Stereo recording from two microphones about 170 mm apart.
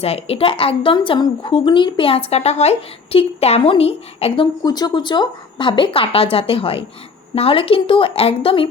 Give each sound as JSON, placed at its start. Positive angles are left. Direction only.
{"t": 0.0, "sound": "speech", "side_deg": 35}
{"t": 4.6, "sound": "speech", "side_deg": 25}